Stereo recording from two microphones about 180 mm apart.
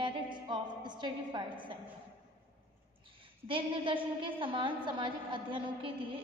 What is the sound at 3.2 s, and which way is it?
A woman's voice, 30° right (ahead or behind).